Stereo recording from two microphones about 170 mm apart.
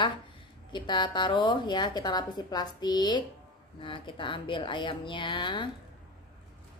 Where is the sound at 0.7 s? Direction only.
25° left (ahead or behind).